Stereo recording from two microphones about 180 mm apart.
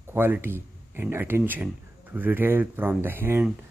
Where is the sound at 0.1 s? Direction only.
10° right (ahead or behind).